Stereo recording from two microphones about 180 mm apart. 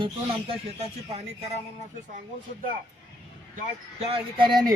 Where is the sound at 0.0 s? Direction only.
30° right (ahead or behind).